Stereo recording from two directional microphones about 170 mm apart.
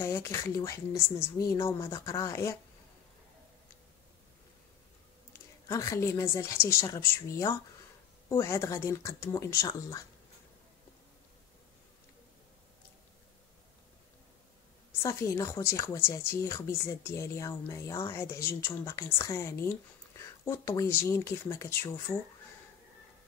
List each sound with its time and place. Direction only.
0.0 s a woman's voice: 15° left (ahead or behind)
5.7 s a woman's voice: 20° left (ahead or behind)
15.0 s a woman's voice: 15° left (ahead or behind)